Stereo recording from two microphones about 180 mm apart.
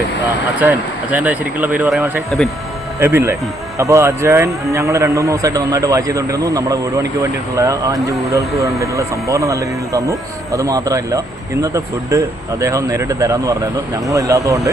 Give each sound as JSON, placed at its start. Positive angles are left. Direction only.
{"t": 0.6, "sound": "a man's voice", "side_deg": -10}